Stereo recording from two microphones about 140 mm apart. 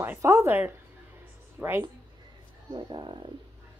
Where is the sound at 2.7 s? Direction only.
30° right (ahead or behind).